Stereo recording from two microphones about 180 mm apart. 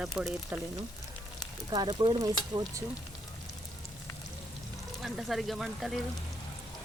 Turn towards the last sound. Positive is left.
turn(degrees=0)  # may be behind; listen again after turning